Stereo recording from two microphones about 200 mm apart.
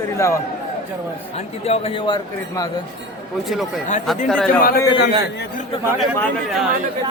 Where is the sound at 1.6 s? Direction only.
30° left (ahead or behind).